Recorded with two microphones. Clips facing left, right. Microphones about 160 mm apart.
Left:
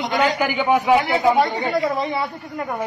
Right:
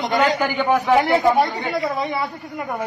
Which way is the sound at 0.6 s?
10° left (ahead or behind).